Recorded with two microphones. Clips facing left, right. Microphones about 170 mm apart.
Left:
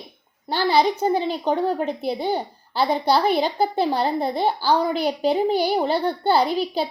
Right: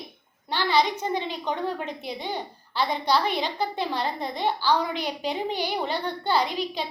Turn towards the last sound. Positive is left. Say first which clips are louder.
# left 6 dB
turn(degrees=35)  # may be behind; listen again after turning